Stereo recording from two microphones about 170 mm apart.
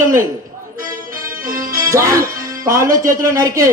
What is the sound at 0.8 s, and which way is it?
Music, 55° right (ahead or behind).